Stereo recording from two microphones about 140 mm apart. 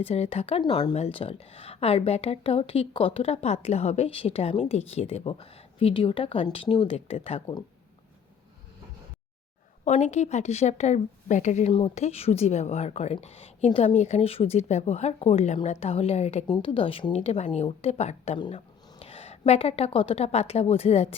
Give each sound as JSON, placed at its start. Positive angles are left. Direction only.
{"t": 0.0, "sound": "speech", "side_deg": 45}
{"t": 0.6, "sound": "speech", "side_deg": 30}
{"t": 0.9, "sound": "speech", "side_deg": 45}
{"t": 9.8, "sound": "a woman's voice", "side_deg": 55}
{"t": 11.7, "sound": "speech", "side_deg": 45}
{"t": 16.5, "sound": "speech", "side_deg": 40}
{"t": 17.2, "sound": "a woman's voice", "side_deg": 55}